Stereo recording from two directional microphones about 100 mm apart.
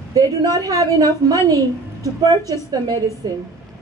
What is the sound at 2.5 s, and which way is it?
Speech, 40° right (ahead or behind).